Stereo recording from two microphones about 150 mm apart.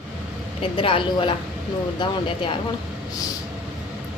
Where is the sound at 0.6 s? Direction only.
35° left (ahead or behind).